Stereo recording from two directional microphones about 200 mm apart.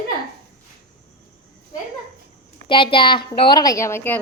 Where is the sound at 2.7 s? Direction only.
25° left (ahead or behind).